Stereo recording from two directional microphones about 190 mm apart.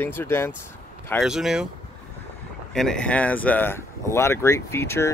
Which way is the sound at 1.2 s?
5° right (ahead or behind).